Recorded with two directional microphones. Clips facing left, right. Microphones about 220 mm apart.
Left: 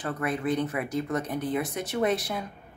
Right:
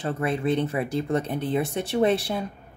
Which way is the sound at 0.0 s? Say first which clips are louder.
Right 3 dB; 25° right (ahead or behind).